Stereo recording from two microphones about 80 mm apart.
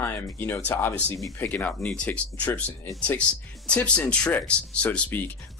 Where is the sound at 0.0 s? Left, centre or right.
Left.